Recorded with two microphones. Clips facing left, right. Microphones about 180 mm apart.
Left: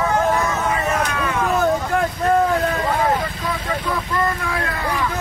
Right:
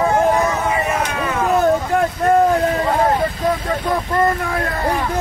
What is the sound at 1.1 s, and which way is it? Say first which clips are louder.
Vehicle: right 2 dB; 30° right (ahead or behind).